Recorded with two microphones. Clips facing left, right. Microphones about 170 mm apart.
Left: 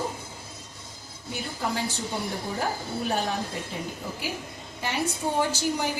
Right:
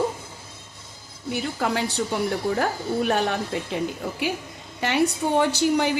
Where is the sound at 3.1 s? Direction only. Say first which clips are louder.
Right 3 dB; 70° right (ahead or behind).